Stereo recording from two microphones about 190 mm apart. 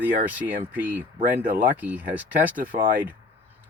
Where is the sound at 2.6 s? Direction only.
45° right (ahead or behind).